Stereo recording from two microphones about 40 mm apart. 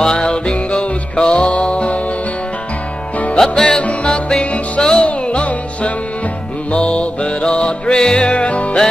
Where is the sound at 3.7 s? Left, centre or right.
Left.